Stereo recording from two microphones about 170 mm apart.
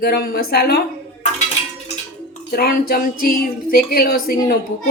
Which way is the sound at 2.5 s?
65° left (ahead or behind).